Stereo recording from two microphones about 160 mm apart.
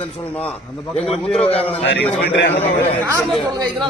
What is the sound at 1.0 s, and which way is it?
Speech, centre (ahead or behind).